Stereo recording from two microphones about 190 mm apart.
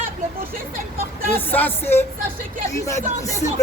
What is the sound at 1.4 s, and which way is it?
Speech, 10° left (ahead or behind).